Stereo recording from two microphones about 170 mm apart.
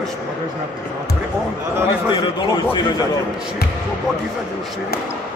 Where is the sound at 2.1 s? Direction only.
30° left (ahead or behind).